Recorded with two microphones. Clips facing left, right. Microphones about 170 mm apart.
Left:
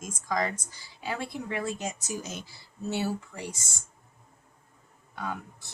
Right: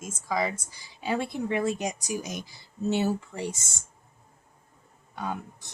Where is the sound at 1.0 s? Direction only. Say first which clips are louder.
Right 5 dB; 25° right (ahead or behind).